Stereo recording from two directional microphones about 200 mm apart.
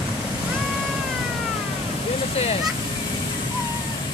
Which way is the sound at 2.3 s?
30° left (ahead or behind).